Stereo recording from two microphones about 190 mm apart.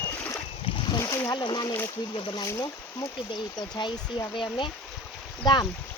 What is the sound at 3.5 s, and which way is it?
Speech, 20° left (ahead or behind).